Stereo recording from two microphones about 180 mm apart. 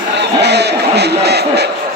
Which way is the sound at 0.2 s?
70° right (ahead or behind).